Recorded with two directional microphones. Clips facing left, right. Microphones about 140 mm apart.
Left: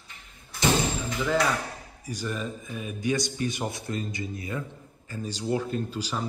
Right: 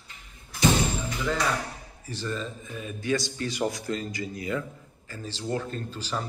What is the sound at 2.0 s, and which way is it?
A man's voice, 15° left (ahead or behind).